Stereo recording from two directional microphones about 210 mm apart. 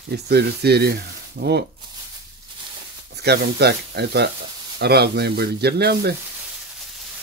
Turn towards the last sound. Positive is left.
turn(degrees=-50)  # may be behind; listen again after turning